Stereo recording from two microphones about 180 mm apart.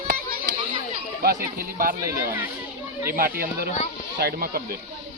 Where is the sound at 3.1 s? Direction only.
55° right (ahead or behind).